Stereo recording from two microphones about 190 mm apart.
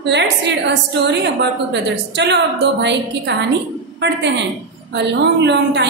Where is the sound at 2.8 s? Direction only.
65° right (ahead or behind).